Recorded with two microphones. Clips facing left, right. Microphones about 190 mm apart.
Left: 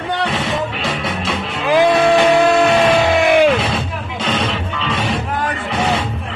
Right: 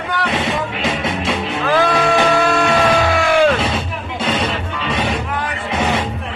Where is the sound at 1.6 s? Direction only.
15° left (ahead or behind).